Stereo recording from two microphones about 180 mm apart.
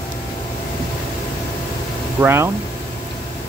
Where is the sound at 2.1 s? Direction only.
15° right (ahead or behind).